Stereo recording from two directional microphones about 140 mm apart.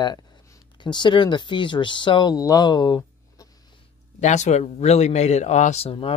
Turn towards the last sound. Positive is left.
turn(degrees=45)  # may be behind; listen again after turning